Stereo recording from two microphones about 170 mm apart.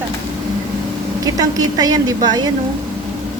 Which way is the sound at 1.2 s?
20° right (ahead or behind).